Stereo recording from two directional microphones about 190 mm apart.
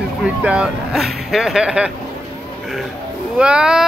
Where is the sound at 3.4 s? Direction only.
5° right (ahead or behind).